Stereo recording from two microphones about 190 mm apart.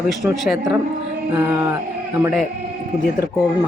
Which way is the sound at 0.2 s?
5° right (ahead or behind).